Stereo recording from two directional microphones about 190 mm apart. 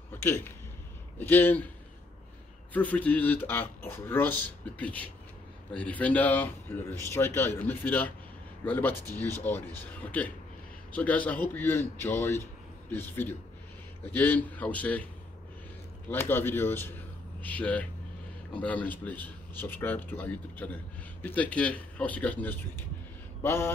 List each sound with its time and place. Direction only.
0.1 s a sound: 10° left (ahead or behind)
1.1 s a man's voice: 10° left (ahead or behind)
2.7 s a man's voice: 10° left (ahead or behind)
16.1 s a man's voice: 10° left (ahead or behind)